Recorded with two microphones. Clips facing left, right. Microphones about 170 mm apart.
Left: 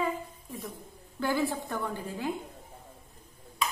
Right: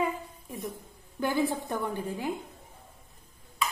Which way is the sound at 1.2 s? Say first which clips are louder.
Right 1 dB; 20° right (ahead or behind).